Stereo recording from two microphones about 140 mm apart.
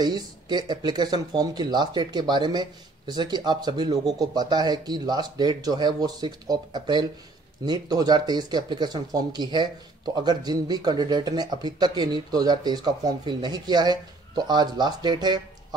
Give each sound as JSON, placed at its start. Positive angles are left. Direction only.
{"t": 0.0, "sound": "speech", "side_deg": -30}